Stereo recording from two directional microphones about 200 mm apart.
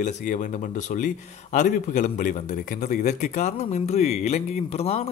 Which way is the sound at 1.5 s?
35° left (ahead or behind).